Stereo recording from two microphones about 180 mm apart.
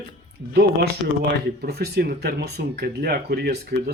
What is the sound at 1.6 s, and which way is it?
Speech, 60° right (ahead or behind).